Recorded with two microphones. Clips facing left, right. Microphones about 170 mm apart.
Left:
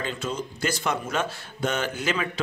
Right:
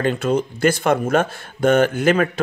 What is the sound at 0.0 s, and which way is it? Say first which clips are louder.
Speech: right 11 dB; 60° right (ahead or behind).